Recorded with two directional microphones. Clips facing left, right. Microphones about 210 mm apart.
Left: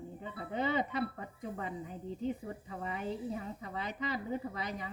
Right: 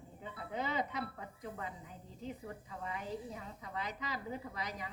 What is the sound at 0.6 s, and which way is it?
Speech, 55° left (ahead or behind).